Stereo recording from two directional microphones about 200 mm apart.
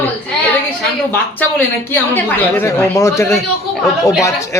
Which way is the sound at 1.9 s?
10° left (ahead or behind).